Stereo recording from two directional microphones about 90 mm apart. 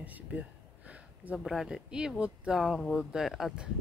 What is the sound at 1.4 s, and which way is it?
Speech, 5° right (ahead or behind).